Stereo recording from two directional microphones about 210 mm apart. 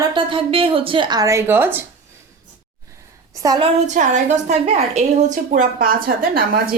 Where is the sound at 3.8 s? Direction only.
35° right (ahead or behind).